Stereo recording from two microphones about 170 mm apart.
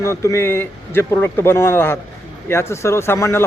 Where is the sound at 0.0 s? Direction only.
15° left (ahead or behind).